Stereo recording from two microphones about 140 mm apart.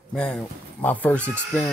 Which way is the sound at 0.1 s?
5° left (ahead or behind).